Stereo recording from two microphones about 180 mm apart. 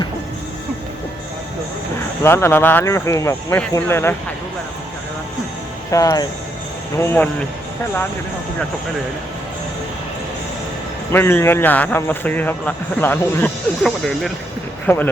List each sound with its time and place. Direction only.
2.2 s a man's voice: 15° left (ahead or behind)
5.9 s a man's voice: 20° left (ahead or behind)
11.1 s a man's voice: 10° left (ahead or behind)